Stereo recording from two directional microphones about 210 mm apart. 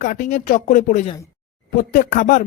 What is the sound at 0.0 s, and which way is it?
Speech, 35° left (ahead or behind).